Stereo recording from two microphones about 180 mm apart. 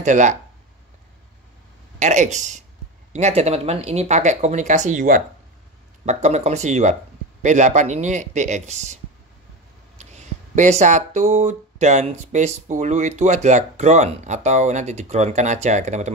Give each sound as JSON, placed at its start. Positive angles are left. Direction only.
{"t": 0.0, "sound": "speech", "side_deg": -40}
{"t": 2.0, "sound": "speech", "side_deg": -40}